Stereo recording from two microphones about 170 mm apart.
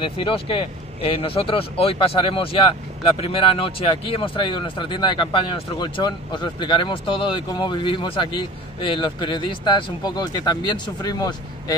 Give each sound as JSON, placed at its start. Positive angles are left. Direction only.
{"t": 0.0, "sound": "speech", "side_deg": 30}